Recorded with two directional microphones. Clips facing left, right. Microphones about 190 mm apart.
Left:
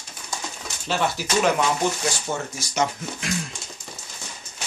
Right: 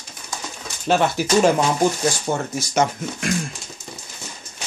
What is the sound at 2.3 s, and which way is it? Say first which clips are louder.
Speech: right 4 dB; 55° right (ahead or behind).